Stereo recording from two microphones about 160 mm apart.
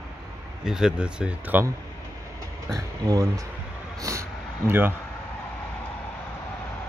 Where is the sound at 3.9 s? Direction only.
20° right (ahead or behind).